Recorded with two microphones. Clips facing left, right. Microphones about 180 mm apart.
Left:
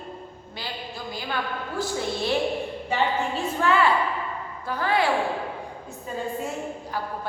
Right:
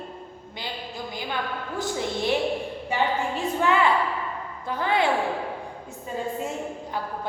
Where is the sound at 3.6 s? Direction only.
20° right (ahead or behind).